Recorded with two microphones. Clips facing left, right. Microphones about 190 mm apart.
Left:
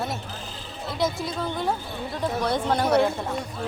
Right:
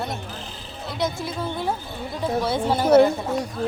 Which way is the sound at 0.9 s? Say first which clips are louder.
Even; centre (ahead or behind).